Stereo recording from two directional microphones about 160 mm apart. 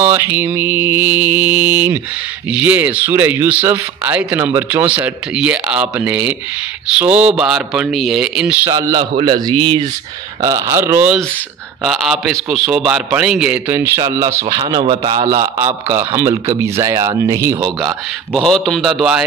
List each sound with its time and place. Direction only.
0.0 s a man's voice: 15° right (ahead or behind)
8.6 s a man's voice: 20° right (ahead or behind)
11.8 s a man's voice: centre (ahead or behind); by 17.6 s 20° right (ahead or behind)
17.8 s a man's voice: centre (ahead or behind)